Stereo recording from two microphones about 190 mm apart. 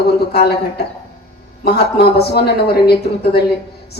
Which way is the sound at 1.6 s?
55° left (ahead or behind).